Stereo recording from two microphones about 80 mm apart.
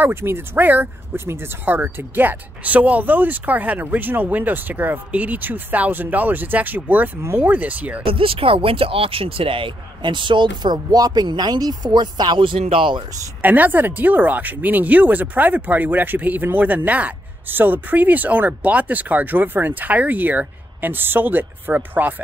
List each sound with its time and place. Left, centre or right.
0.0 s speech: right
9.6 s speech: right
13.4 s speech: right